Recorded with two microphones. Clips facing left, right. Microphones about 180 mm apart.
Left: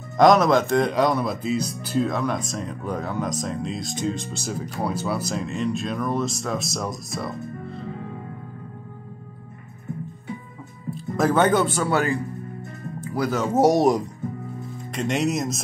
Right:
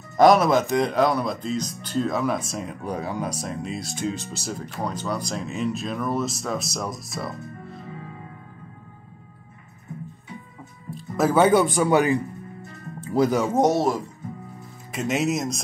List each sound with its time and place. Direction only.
0.2 s speech: 5° right (ahead or behind)
10.9 s speech: centre (ahead or behind)
13.0 s music: 25° right (ahead or behind)
13.3 s speech: 10° right (ahead or behind)
13.6 s speech: 15° left (ahead or behind)
14.9 s speech: 5° right (ahead or behind)